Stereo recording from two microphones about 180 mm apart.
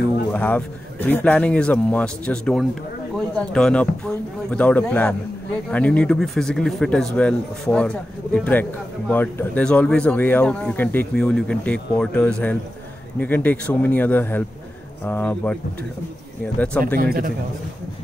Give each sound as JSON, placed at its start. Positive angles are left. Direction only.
{"t": 0.3, "sound": "speech", "side_deg": 10}
{"t": 16.5, "sound": "speech", "side_deg": 5}
{"t": 16.8, "sound": "a man's voice", "side_deg": -55}